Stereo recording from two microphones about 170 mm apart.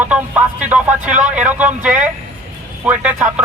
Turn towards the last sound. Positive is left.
turn(degrees=-10)  # may be behind; listen again after turning